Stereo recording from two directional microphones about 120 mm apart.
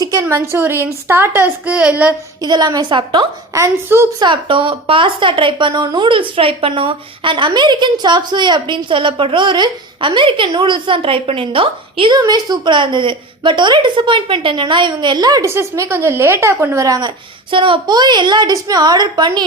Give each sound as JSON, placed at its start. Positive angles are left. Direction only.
{"t": 0.0, "sound": "a child's voice", "side_deg": -30}
{"t": 2.4, "sound": "a woman's voice", "side_deg": -35}
{"t": 3.5, "sound": "a child's voice", "side_deg": -25}
{"t": 4.2, "sound": "a woman's voice", "side_deg": -40}
{"t": 17.5, "sound": "a woman's voice", "side_deg": -45}